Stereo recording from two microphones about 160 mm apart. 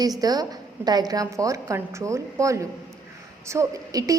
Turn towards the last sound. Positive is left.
turn(degrees=-20)  # may be behind; listen again after turning